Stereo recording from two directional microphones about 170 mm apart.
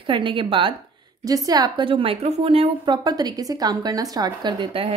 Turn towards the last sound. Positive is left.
turn(degrees=-30)  # may be behind; listen again after turning